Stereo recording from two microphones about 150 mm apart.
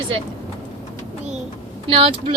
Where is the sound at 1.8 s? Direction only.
35° right (ahead or behind).